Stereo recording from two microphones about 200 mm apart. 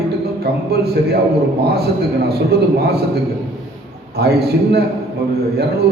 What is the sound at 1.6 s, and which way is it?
Speech, 50° right (ahead or behind).